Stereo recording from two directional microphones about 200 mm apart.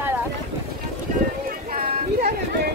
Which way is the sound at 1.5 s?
45° right (ahead or behind).